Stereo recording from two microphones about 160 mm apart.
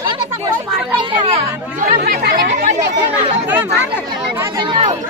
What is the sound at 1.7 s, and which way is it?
Speech, 60° right (ahead or behind).